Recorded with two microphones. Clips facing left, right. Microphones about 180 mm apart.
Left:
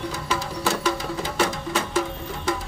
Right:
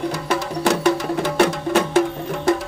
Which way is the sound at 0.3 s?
65° right (ahead or behind).